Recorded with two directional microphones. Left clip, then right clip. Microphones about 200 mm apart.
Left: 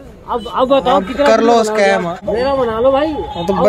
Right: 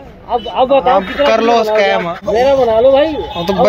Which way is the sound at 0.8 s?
20° left (ahead or behind).